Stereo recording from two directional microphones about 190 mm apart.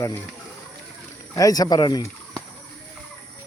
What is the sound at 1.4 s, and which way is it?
Speech, 20° left (ahead or behind).